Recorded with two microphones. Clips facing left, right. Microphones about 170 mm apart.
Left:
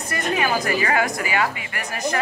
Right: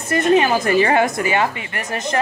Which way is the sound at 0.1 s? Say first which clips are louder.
Right 8 dB; 30° right (ahead or behind).